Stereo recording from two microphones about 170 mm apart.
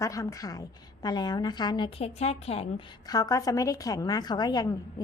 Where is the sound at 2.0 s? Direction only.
35° left (ahead or behind).